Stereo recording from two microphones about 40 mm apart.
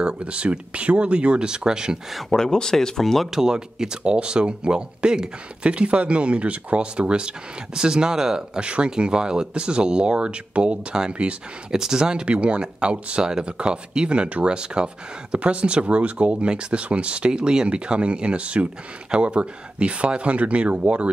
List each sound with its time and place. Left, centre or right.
0.0 s speech: right
2.0 s speech: centre
2.3 s speech: centre
3.0 s speech: centre
3.3 s speech: centre
8.5 s speech: right
11.7 s speech: centre; by 21.1 s right